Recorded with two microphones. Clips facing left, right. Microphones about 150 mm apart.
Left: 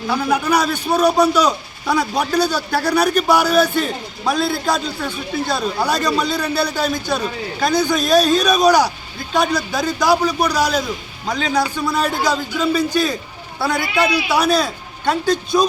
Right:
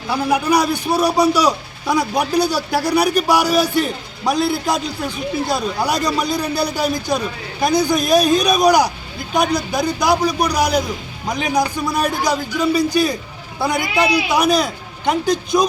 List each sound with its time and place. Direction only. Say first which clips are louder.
0.1 s a man's voice: right 1 dB; 10° right (ahead or behind)